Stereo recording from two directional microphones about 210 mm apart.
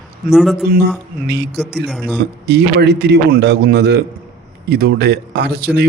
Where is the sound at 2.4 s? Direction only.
55° right (ahead or behind).